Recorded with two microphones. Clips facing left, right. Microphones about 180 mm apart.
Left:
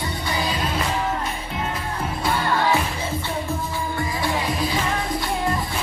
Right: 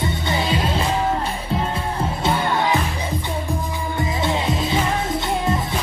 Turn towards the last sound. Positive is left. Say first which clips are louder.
# right 3 dB
turn(degrees=-25)  # may be behind; listen again after turning